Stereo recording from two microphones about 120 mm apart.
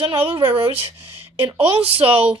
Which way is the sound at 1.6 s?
50° right (ahead or behind).